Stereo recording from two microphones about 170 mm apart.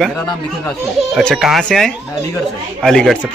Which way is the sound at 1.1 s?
Centre (ahead or behind).